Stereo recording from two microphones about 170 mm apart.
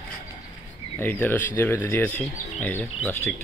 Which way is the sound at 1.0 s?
10° left (ahead or behind).